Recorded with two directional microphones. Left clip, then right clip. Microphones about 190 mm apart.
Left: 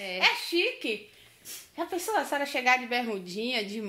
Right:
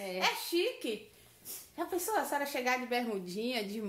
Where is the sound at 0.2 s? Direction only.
30° left (ahead or behind).